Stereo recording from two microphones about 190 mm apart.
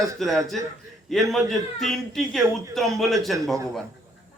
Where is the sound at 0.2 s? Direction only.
Centre (ahead or behind).